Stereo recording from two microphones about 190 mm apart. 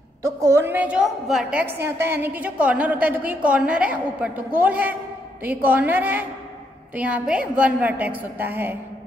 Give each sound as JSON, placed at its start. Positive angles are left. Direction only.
{"t": 0.4, "sound": "a woman's voice", "side_deg": -15}